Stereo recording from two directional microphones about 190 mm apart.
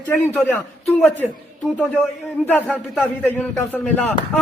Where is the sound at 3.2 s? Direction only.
10° left (ahead or behind).